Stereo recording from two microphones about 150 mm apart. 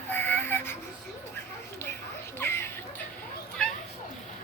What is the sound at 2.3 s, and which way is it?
Children playing, 15° left (ahead or behind).